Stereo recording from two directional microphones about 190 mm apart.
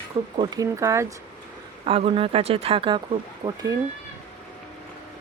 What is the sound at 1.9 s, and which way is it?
Speech, 30° right (ahead or behind).